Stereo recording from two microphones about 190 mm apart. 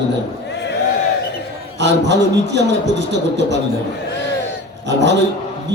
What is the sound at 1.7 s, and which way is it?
A man's voice, 65° right (ahead or behind).